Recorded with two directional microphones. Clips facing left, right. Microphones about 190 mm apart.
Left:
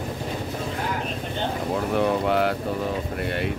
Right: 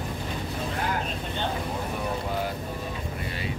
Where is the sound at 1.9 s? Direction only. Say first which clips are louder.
Left 11 dB; 75° left (ahead or behind).